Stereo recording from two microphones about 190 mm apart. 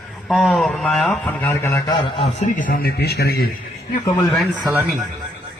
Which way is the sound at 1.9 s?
30° left (ahead or behind).